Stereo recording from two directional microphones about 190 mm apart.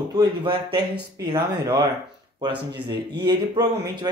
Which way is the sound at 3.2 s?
25° right (ahead or behind).